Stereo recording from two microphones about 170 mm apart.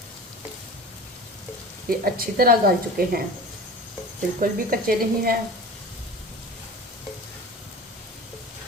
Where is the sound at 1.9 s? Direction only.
60° right (ahead or behind).